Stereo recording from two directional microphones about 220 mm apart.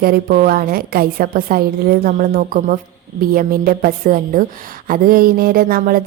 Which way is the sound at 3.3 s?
40° right (ahead or behind).